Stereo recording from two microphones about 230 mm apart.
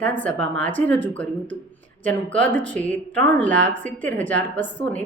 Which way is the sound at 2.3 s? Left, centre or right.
Centre.